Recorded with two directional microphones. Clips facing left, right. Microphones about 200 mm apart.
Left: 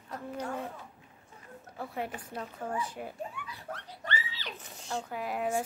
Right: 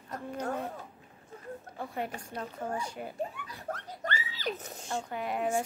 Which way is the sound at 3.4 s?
45° right (ahead or behind).